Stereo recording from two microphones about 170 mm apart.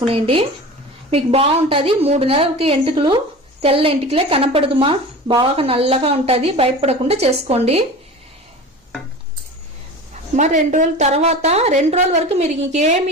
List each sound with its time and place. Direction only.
0.0 s a woman's voice: 30° right (ahead or behind)
10.3 s a woman's voice: 45° right (ahead or behind)